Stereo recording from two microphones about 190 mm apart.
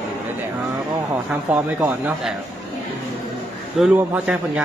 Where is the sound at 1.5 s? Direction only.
10° right (ahead or behind).